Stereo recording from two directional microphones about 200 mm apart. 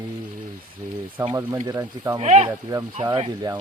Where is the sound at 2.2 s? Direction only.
35° right (ahead or behind).